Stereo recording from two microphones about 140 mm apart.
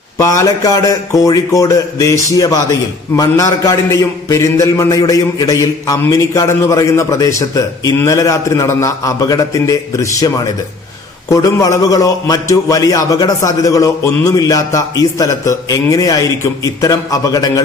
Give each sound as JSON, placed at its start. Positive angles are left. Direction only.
{"t": 0.2, "sound": "speech", "side_deg": 20}